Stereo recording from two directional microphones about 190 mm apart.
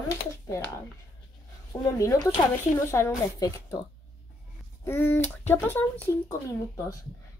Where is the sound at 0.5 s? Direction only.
10° left (ahead or behind).